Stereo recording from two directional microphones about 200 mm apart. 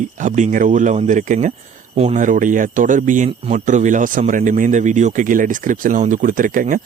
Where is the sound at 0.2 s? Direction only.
35° right (ahead or behind).